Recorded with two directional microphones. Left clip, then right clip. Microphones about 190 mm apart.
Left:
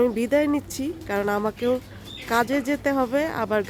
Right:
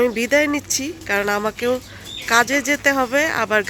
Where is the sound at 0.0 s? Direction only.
5° left (ahead or behind).